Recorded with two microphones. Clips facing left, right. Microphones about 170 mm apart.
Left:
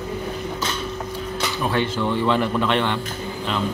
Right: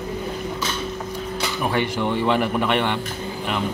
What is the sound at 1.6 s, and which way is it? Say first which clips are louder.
Speech: even; 15° right (ahead or behind).